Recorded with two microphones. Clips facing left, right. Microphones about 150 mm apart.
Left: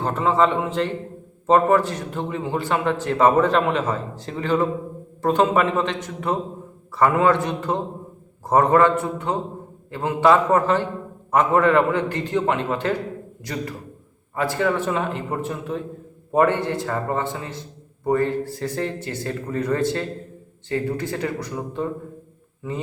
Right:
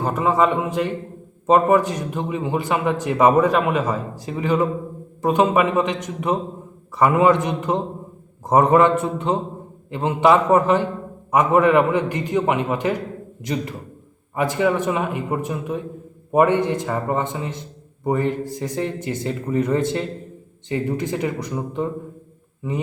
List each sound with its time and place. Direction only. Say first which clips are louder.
0.0 s a man's voice: right 1 dB; 10° right (ahead or behind)